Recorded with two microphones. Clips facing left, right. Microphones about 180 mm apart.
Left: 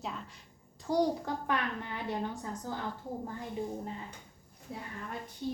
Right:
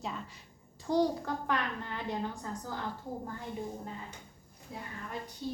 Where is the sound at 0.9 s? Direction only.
15° left (ahead or behind).